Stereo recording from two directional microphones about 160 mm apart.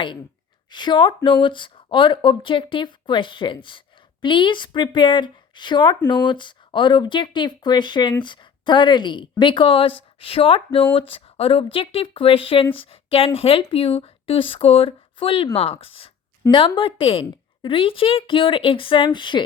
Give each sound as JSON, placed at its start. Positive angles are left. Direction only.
{"t": 0.7, "sound": "speech", "side_deg": 30}